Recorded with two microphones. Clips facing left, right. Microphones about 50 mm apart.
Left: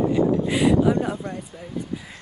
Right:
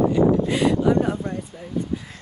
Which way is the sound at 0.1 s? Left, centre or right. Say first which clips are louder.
Right 2 dB; centre.